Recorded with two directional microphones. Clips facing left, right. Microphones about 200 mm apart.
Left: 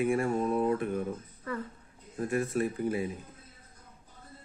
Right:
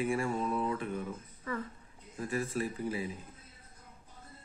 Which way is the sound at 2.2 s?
55° left (ahead or behind).